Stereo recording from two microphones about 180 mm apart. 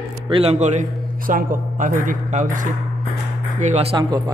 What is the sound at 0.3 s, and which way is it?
A man's voice, 35° right (ahead or behind).